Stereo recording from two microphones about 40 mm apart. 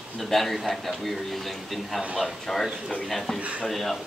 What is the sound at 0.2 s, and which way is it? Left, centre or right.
Speech, centre.